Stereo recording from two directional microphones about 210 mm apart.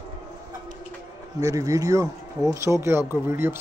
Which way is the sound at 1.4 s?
15° right (ahead or behind).